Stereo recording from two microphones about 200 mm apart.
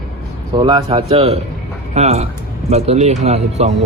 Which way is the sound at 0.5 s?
25° right (ahead or behind).